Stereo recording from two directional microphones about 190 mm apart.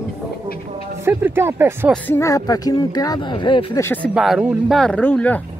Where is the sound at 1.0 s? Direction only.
10° right (ahead or behind).